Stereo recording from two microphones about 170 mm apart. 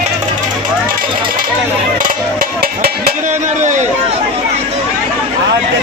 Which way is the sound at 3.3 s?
45° right (ahead or behind).